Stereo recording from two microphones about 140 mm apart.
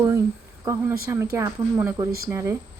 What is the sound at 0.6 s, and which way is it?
Speech, 20° right (ahead or behind).